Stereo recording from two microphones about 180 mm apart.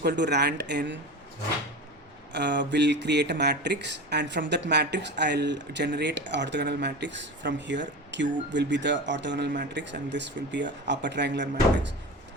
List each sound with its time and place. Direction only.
0.0 s speech: 70° right (ahead or behind)
2.3 s speech: 75° right (ahead or behind)